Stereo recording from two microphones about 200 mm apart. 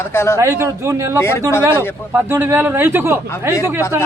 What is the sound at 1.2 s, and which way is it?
Speech, 10° left (ahead or behind).